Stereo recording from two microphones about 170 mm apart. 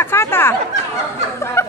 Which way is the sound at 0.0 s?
15° left (ahead or behind).